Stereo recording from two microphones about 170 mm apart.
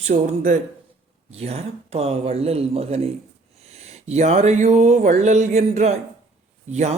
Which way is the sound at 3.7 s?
40° right (ahead or behind).